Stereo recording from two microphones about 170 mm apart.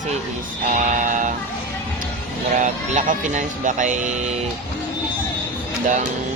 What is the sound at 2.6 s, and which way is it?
Speech, 50° right (ahead or behind).